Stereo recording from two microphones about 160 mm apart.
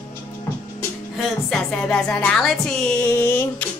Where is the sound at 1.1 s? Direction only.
5° left (ahead or behind).